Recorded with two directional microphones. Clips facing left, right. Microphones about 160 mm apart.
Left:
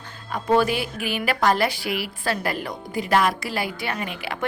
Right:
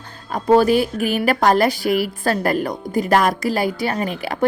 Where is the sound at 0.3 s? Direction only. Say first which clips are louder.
Right 6 dB; 40° right (ahead or behind).